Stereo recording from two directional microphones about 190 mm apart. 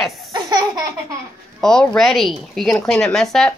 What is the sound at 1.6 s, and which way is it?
Speech, centre (ahead or behind).